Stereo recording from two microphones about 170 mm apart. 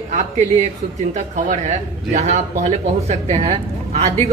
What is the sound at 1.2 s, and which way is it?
A man's voice, 45° right (ahead or behind).